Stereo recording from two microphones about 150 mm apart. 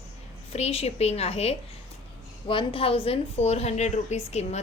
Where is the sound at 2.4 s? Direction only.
35° left (ahead or behind).